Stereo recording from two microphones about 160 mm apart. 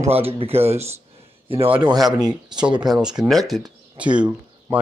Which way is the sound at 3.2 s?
Centre (ahead or behind).